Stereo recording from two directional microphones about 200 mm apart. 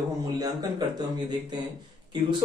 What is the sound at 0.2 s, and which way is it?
Speech, 20° right (ahead or behind).